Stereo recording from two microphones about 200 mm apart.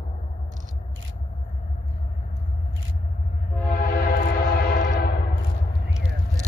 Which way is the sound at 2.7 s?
70° right (ahead or behind).